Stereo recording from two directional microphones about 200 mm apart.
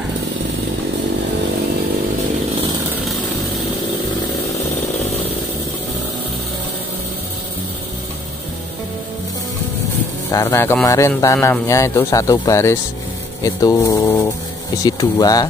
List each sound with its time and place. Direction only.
10.3 s speech: 15° left (ahead or behind)